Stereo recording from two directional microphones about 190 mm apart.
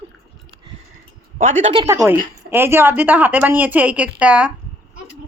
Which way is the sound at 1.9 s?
15° right (ahead or behind).